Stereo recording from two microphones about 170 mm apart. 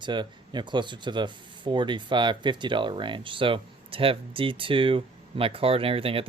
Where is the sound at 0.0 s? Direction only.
25° right (ahead or behind).